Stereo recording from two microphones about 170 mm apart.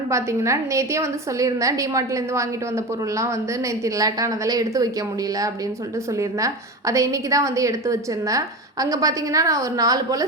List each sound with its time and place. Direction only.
0.1 s a woman's voice: 15° right (ahead or behind)
6.1 s a woman's voice: 20° right (ahead or behind)